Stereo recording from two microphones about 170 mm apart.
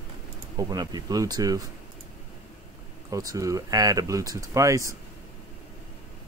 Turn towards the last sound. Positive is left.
turn(degrees=-20)  # may be behind; listen again after turning